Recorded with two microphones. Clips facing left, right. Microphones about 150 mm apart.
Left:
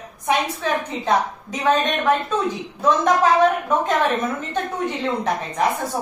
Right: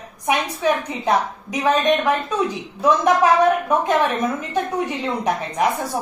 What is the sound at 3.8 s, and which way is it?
A woman's voice, 10° right (ahead or behind).